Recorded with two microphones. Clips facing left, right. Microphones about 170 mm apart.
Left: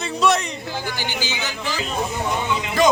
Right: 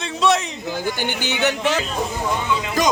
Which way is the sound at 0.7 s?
55° right (ahead or behind).